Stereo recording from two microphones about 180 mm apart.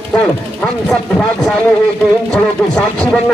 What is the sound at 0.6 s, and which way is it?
Speech, 5° left (ahead or behind).